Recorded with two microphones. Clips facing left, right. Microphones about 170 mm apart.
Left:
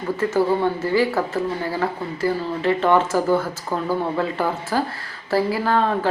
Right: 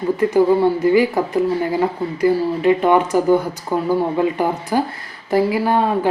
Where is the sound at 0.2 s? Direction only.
15° right (ahead or behind).